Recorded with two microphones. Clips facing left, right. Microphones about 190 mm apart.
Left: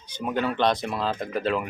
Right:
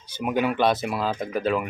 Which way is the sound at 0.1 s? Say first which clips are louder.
Right 3 dB; 10° right (ahead or behind).